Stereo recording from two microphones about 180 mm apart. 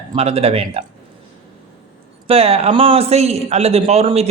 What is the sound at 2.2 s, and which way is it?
A man's voice, 30° right (ahead or behind).